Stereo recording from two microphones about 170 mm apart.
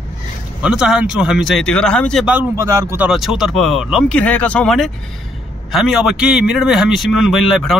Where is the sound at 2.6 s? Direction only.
20° right (ahead or behind).